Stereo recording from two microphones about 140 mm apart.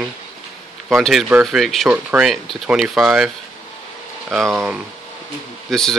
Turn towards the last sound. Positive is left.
turn(degrees=5)  # may be behind; listen again after turning